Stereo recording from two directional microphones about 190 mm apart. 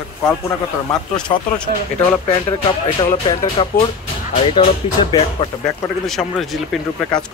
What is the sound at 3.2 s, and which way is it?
Speech, 30° left (ahead or behind).